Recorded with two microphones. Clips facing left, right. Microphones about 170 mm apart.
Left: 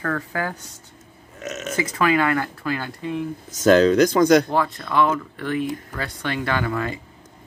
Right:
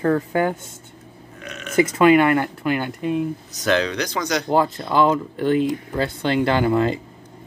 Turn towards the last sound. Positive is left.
turn(degrees=-25)  # may be behind; listen again after turning